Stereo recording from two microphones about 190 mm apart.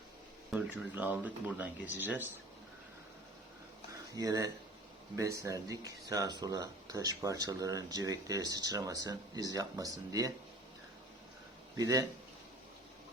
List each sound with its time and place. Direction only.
0.5 s speech: 10° right (ahead or behind)
4.1 s speech: 20° right (ahead or behind)
11.8 s speech: 20° right (ahead or behind)